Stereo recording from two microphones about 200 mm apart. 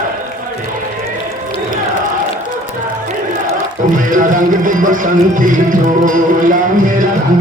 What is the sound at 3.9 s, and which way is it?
Speech, 40° right (ahead or behind).